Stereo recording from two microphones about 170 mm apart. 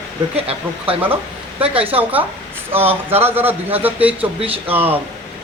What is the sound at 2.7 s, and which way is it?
Speech, 10° right (ahead or behind).